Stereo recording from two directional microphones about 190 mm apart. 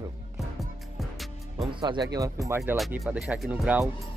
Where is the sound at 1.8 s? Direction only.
25° right (ahead or behind).